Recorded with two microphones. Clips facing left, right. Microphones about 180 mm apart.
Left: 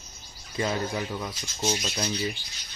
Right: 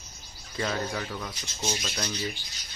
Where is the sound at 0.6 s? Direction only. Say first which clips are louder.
Left 2 dB; 15° left (ahead or behind).